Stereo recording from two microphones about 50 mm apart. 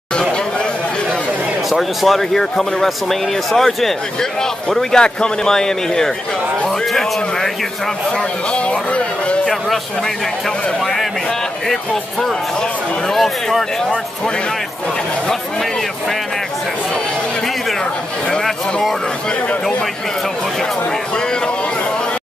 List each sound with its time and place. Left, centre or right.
1.7 s speech: centre
8.5 s speech: left
11.7 s speech: centre
18.4 s speech: centre